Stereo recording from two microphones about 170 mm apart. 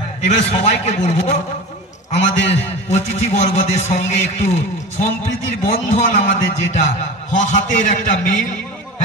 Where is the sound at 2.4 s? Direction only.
40° left (ahead or behind).